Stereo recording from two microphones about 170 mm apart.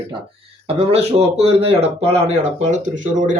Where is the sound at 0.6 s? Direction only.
35° right (ahead or behind).